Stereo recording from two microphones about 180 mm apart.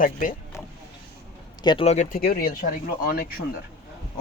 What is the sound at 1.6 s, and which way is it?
Speech, 25° left (ahead or behind).